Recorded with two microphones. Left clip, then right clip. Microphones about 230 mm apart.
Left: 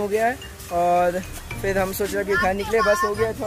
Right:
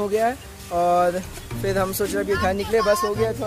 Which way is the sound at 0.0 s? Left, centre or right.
Centre.